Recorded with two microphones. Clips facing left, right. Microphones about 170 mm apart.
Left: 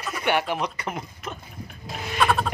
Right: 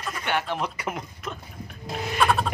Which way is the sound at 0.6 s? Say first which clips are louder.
Left 1 dB; 5° right (ahead or behind).